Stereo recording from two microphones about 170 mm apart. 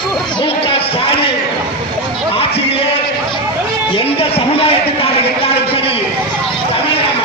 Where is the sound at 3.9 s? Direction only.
35° left (ahead or behind).